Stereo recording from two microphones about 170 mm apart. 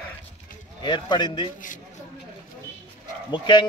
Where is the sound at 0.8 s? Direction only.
25° left (ahead or behind).